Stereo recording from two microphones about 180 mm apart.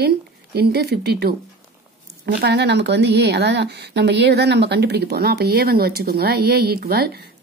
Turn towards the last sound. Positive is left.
turn(degrees=-60)  # may be behind; listen again after turning